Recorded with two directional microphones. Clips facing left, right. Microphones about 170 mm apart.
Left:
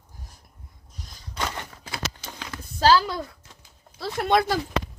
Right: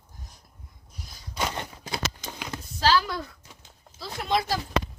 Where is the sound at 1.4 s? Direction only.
20° right (ahead or behind).